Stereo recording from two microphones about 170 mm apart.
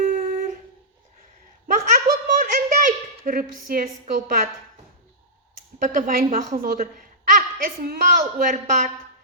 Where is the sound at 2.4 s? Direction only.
50° right (ahead or behind).